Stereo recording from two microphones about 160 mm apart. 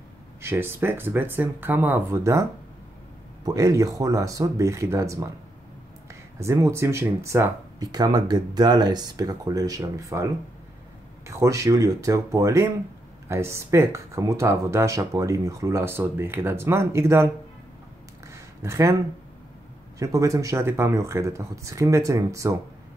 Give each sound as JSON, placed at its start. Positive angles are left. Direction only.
{"t": 0.4, "sound": "speech", "side_deg": -15}
{"t": 3.4, "sound": "speech", "side_deg": -20}
{"t": 6.4, "sound": "speech", "side_deg": -15}
{"t": 18.3, "sound": "a sound", "side_deg": -20}
{"t": 20.0, "sound": "speech", "side_deg": -20}